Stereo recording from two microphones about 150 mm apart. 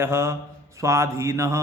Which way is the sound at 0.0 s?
15° right (ahead or behind).